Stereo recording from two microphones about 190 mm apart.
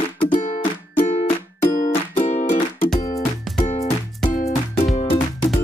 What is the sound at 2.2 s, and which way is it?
Music, 40° left (ahead or behind).